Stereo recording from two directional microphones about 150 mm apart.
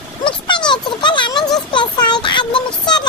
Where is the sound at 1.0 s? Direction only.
30° left (ahead or behind).